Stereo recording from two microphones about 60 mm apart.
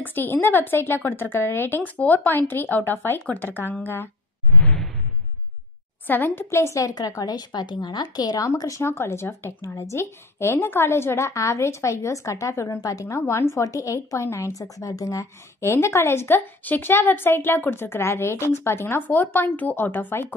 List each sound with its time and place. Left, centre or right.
0.0 s speech: left
4.6 s whoosh: centre
6.0 s speech: left
6.8 s a woman's voice: left
8.5 s a woman's voice: left
8.8 s a woman's voice: left
13.3 s speech: left
13.7 s a woman's voice: left
14.1 s a woman's voice: left
15.7 s speech: left
19.0 s speech: left